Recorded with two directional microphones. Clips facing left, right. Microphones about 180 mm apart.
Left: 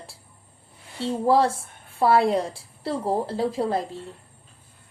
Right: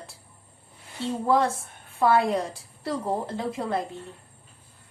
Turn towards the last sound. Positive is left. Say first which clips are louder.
# left 3 dB
turn(degrees=30)  # may be behind; listen again after turning